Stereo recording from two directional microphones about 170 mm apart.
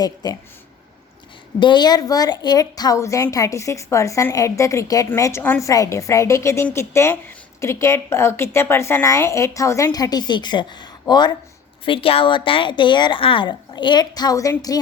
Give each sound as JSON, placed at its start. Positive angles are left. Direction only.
{"t": 0.0, "sound": "a woman's voice", "side_deg": 25}
{"t": 1.5, "sound": "a woman's voice", "side_deg": 25}